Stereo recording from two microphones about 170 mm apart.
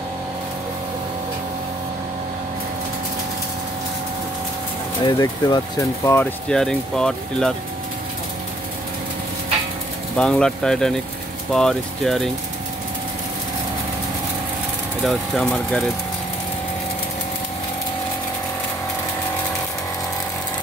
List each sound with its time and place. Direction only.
5.0 s speech: 25° left (ahead or behind)
6.5 s speech: 5° left (ahead or behind)
10.1 s speech: 5° left (ahead or behind)
15.0 s speech: centre (ahead or behind)